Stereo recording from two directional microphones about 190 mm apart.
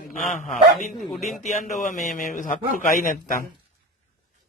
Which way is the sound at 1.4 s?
40° left (ahead or behind).